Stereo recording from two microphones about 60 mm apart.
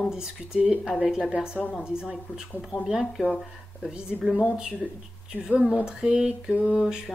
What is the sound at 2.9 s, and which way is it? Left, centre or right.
Speech, centre.